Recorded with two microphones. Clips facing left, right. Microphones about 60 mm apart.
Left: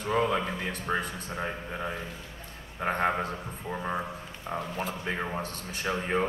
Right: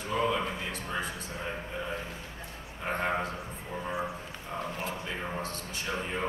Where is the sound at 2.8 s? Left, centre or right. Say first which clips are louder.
Left 4 dB; left.